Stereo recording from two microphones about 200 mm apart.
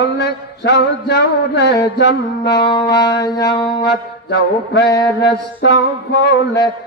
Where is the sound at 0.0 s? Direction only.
55° left (ahead or behind).